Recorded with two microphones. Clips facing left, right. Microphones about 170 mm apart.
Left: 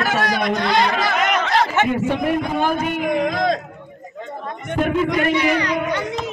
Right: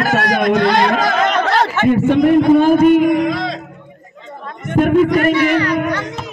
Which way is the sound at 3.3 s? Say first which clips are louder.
Left 1 dB; 50° left (ahead or behind).